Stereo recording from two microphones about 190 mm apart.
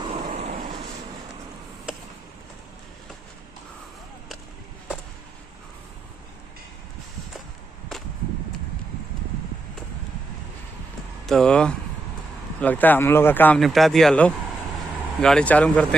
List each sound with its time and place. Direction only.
11.2 s speech: 5° left (ahead or behind)